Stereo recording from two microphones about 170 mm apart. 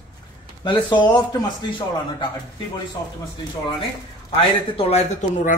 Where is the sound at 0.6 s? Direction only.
25° left (ahead or behind).